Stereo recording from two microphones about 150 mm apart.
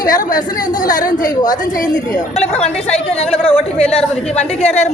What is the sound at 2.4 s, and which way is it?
A woman's voice, 45° left (ahead or behind).